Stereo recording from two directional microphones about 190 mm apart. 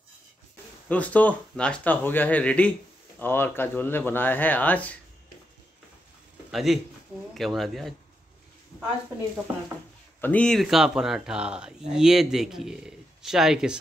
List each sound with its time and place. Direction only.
0.8 s speech: 10° left (ahead or behind)
6.5 s speech: centre (ahead or behind)
10.2 s speech: 5° left (ahead or behind)